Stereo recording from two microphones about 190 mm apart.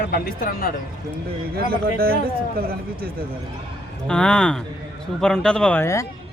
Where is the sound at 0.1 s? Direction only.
50° left (ahead or behind).